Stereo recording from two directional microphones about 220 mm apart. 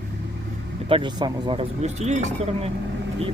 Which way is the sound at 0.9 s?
20° right (ahead or behind).